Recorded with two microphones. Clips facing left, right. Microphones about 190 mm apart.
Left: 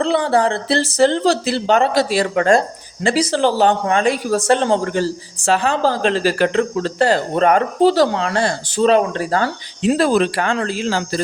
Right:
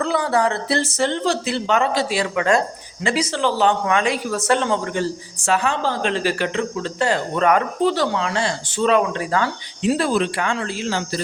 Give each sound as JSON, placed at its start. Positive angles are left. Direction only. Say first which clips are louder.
{"t": 0.0, "sound": "speech", "louder": "left 3 dB", "side_deg": 30}